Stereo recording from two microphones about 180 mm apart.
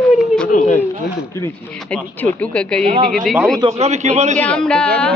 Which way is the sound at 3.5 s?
30° right (ahead or behind).